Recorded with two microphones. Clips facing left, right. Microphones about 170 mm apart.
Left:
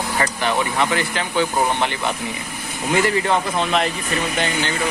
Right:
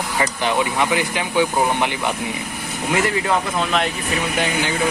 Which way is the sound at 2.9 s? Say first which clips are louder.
Left 2 dB; centre (ahead or behind).